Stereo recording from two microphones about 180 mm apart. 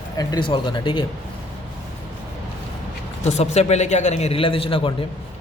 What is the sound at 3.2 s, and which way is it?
A man's voice, 40° left (ahead or behind).